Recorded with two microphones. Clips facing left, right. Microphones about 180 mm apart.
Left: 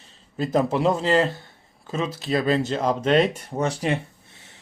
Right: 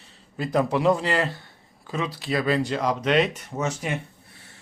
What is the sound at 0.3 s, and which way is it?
Speech, 25° left (ahead or behind).